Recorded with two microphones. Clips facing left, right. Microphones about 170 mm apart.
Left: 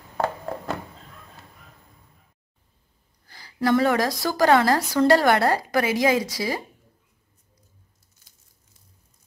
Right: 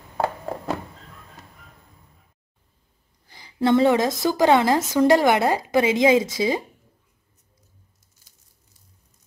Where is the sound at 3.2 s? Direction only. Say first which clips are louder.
Right 2 dB; 20° right (ahead or behind).